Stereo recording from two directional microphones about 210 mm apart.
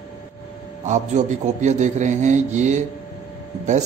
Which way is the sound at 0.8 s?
35° right (ahead or behind).